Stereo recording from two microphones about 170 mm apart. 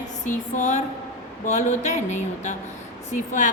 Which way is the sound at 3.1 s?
45° left (ahead or behind).